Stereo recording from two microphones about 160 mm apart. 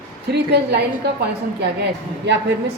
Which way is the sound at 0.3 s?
90° right.